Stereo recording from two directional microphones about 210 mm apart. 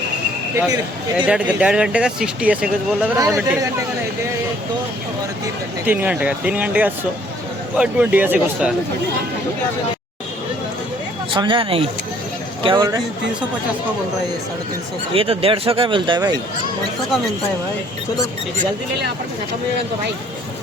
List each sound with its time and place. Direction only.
0.5 s speech: 10° right (ahead or behind)
5.8 s speech: 10° right (ahead or behind)
11.3 s speech: 25° right (ahead or behind)
15.1 s speech: 25° right (ahead or behind)